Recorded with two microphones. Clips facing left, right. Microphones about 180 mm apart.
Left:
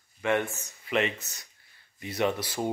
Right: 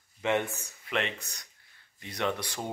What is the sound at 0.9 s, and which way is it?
Speech, 5° left (ahead or behind).